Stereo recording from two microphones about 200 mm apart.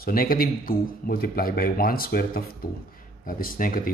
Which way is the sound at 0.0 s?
45° left (ahead or behind).